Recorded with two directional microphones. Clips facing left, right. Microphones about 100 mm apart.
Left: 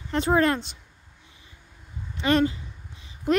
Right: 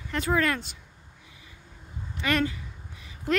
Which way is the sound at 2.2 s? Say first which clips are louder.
Left 5 dB; 25° left (ahead or behind).